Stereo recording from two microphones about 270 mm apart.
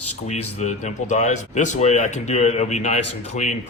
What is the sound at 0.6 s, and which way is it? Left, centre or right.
Speech, left.